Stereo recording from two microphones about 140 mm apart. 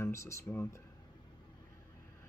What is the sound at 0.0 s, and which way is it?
Speech, 20° left (ahead or behind).